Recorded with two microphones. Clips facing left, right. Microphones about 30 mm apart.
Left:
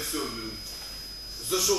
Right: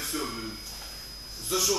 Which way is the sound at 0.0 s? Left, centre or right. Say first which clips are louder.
Even; centre.